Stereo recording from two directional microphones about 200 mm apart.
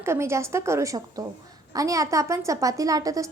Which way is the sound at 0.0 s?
15° right (ahead or behind).